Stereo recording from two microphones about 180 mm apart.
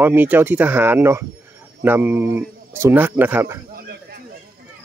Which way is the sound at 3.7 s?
60° right (ahead or behind).